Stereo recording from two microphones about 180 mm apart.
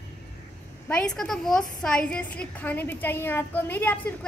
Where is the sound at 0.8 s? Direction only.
5° left (ahead or behind).